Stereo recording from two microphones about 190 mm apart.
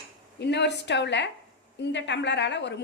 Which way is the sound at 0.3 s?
65° left (ahead or behind).